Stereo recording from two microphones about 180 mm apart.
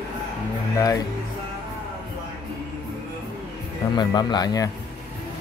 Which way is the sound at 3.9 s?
25° left (ahead or behind).